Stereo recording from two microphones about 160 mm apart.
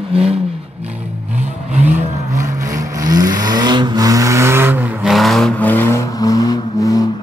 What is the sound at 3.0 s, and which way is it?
Vehicle, 25° right (ahead or behind).